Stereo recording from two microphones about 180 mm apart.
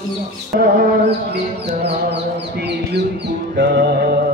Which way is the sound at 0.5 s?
55° right (ahead or behind).